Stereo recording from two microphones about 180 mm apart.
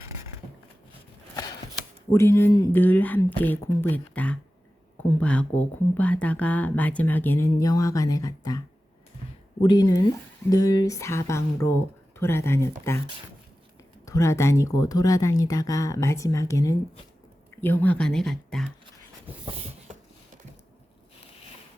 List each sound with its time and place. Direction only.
2.1 s speech: 15° left (ahead or behind)
14.0 s speech: 15° left (ahead or behind)
19.5 s a sound: 40° right (ahead or behind)